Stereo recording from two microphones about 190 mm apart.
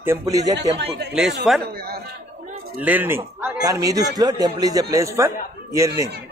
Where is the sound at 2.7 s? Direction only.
10° right (ahead or behind).